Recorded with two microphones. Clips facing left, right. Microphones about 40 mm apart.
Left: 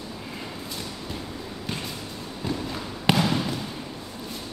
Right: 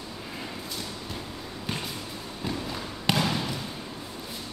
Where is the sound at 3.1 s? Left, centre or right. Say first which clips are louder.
Left 4 dB; centre.